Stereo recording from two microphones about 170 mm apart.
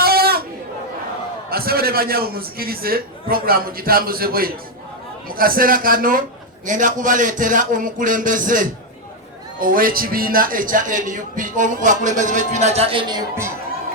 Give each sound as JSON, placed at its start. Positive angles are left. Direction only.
{"t": 0.0, "sound": "chatter", "side_deg": -65}
{"t": 1.5, "sound": "a man's voice", "side_deg": -60}